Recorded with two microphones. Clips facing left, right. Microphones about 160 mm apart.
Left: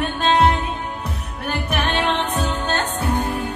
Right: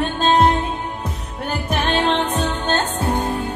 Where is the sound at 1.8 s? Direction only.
25° right (ahead or behind).